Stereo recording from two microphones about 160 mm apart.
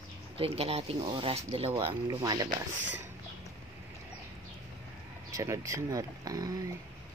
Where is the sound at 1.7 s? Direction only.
25° right (ahead or behind).